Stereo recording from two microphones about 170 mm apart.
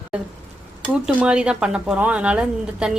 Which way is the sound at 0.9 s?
5° right (ahead or behind).